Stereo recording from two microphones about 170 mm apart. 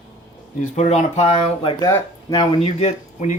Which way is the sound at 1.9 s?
20° left (ahead or behind).